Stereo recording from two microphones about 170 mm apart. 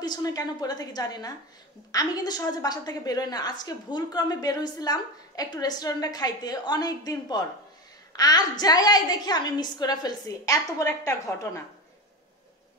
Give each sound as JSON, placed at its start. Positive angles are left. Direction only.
{"t": 0.0, "sound": "a woman's voice", "side_deg": 20}